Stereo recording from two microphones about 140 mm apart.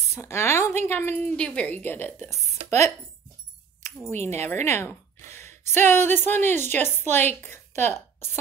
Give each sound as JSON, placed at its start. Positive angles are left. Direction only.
{"t": 0.1, "sound": "a woman's voice", "side_deg": 20}
{"t": 4.1, "sound": "speech", "side_deg": -55}
{"t": 4.4, "sound": "a woman's voice", "side_deg": 20}